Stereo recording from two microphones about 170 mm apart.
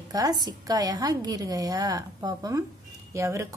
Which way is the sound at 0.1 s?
20° right (ahead or behind).